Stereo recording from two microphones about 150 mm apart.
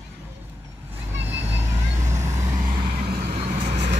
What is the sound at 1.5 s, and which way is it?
Vehicle, 20° right (ahead or behind).